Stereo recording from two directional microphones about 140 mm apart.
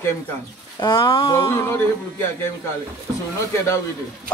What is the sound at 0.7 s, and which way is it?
Speech, 30° left (ahead or behind).